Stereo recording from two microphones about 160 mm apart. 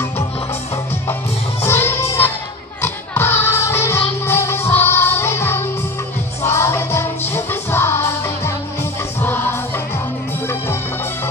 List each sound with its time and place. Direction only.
1.6 s music: 15° left (ahead or behind)
9.2 s music: 15° left (ahead or behind)